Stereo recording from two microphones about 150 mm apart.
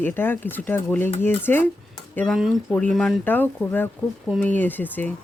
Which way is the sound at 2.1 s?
Centre (ahead or behind).